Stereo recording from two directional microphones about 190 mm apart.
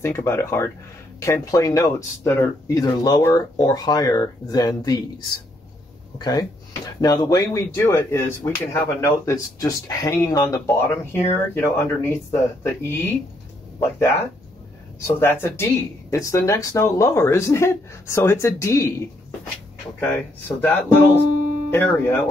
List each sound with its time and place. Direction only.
0.0 s speech: 15° left (ahead or behind)
6.1 s speech: 20° left (ahead or behind)
20.0 s speech: 10° left (ahead or behind)